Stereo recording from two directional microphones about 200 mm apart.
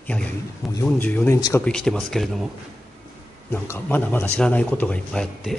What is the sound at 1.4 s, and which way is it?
Speech, 20° left (ahead or behind).